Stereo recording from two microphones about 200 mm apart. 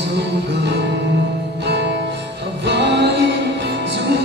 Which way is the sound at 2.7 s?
60° right (ahead or behind).